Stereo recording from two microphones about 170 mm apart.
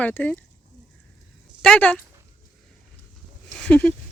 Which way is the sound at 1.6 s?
5° left (ahead or behind).